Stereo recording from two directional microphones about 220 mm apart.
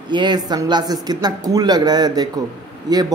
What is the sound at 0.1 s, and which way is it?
Speech, 20° right (ahead or behind).